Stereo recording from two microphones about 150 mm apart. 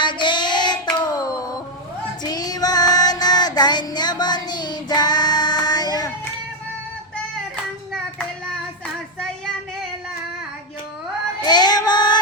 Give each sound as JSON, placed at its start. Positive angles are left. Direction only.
{"t": 0.0, "sound": "child singing", "side_deg": 30}
{"t": 11.4, "sound": "child singing", "side_deg": 30}